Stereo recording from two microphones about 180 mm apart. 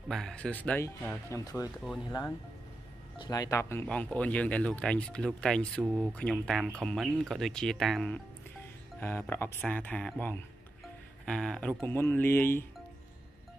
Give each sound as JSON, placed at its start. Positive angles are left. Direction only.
{"t": 0.1, "sound": "speech", "side_deg": 5}